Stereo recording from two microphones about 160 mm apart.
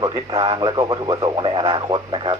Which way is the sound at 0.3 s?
35° right (ahead or behind).